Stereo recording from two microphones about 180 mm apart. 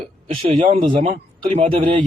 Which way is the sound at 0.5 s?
35° right (ahead or behind).